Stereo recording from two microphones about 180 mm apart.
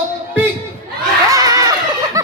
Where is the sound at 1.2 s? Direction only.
20° right (ahead or behind).